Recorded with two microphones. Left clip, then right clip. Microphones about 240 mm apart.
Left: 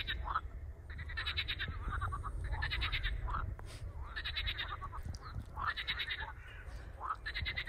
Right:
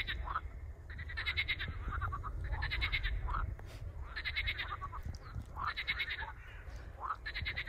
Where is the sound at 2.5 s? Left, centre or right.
Right.